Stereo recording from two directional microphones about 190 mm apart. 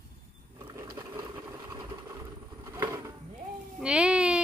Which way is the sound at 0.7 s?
15° right (ahead or behind).